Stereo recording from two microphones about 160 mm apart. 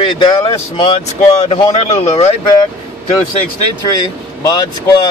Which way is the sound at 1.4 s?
40° left (ahead or behind).